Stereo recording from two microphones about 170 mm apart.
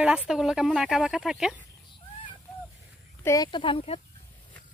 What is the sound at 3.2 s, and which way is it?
Speech, 20° left (ahead or behind).